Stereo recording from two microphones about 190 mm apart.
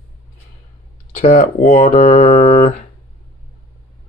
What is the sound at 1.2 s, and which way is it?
Speech, 35° left (ahead or behind).